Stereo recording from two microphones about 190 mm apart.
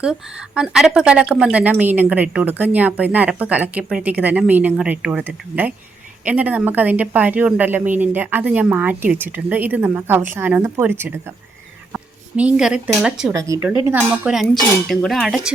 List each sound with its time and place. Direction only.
0.0 s a woman's voice: 5° right (ahead or behind)
13.3 s a woman's voice: 15° right (ahead or behind)
14.1 s speech: 5° right (ahead or behind)